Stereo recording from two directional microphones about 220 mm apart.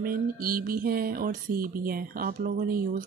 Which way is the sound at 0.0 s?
40° right (ahead or behind).